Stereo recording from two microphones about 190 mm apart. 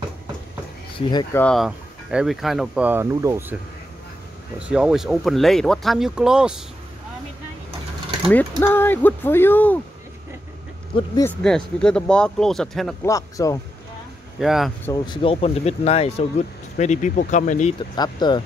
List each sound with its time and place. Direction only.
1.3 s speech: 5° left (ahead or behind); by 3.5 s 15° right (ahead or behind)
4.6 s speech: 5° right (ahead or behind)
8.3 s speech: 10° left (ahead or behind)
10.9 s speech: 25° left (ahead or behind)
11.2 s speech: 5° left (ahead or behind)
13.0 s speech: 15° left (ahead or behind)
14.4 s speech: centre (ahead or behind)
14.9 s speech: 20° left (ahead or behind); by 17.7 s 40° left (ahead or behind)
17.9 s speech: 20° left (ahead or behind)